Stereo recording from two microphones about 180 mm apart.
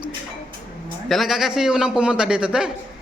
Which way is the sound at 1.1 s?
Centre (ahead or behind).